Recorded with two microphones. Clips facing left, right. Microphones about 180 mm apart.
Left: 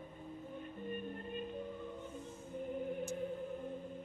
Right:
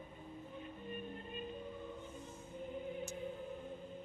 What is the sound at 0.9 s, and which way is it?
Music, 50° left (ahead or behind).